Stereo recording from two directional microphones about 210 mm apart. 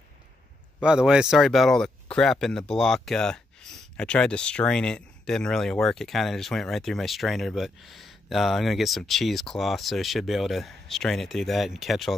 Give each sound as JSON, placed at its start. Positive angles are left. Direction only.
{"t": 0.7, "sound": "speech", "side_deg": -5}